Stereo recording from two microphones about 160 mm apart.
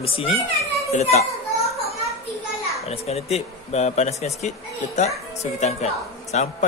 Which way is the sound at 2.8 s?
40° left (ahead or behind).